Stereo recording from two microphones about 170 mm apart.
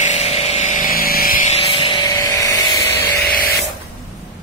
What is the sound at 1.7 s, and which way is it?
Vehicle, 30° left (ahead or behind).